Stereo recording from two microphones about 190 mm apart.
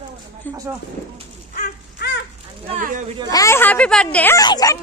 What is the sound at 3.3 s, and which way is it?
Speech, 15° left (ahead or behind).